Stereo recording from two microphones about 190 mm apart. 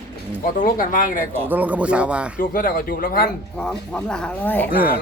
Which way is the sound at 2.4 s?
50° left (ahead or behind).